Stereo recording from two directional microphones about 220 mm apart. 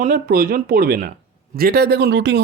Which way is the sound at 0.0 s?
40° right (ahead or behind).